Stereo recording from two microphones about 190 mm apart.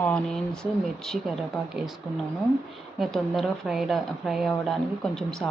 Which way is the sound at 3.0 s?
Centre (ahead or behind).